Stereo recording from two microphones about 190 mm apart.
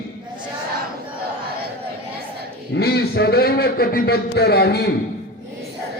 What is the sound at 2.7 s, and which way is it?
A man's voice, 55° left (ahead or behind).